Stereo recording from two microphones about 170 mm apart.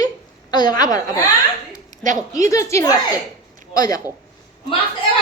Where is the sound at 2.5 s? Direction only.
15° left (ahead or behind).